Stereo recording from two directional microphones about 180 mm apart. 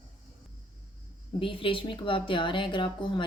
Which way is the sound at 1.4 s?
30° left (ahead or behind).